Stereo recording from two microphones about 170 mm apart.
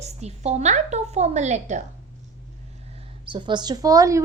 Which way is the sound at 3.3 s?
25° right (ahead or behind).